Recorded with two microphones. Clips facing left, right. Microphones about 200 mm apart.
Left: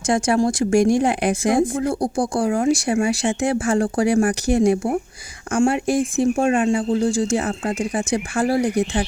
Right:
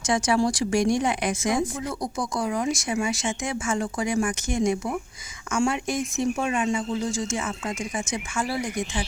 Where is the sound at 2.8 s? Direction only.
55° left (ahead or behind).